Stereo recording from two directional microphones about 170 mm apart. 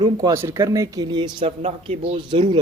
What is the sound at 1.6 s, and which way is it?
Speech, 40° right (ahead or behind).